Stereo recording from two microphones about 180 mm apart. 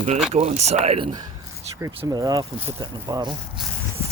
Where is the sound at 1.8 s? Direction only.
20° right (ahead or behind).